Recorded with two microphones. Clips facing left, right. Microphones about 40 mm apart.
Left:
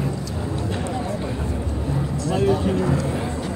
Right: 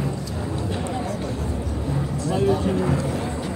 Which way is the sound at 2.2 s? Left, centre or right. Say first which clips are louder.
Left 1 dB; left.